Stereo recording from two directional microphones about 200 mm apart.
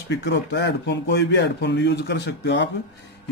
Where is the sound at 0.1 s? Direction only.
60° left (ahead or behind).